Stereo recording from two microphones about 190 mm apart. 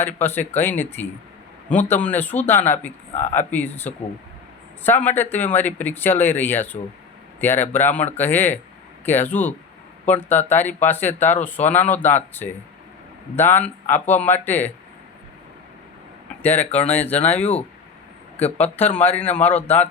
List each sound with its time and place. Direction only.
0.0 s speech: 10° left (ahead or behind)
5.0 s speech: 10° left (ahead or behind)
16.4 s speech: 10° left (ahead or behind)
18.4 s a man's voice: 35° left (ahead or behind)
19.0 s speech: 10° left (ahead or behind)